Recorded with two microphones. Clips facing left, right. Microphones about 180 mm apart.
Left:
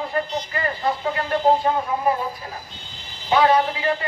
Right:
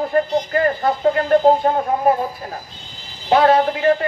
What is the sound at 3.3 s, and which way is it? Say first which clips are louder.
Speech: right 4 dB; 50° right (ahead or behind).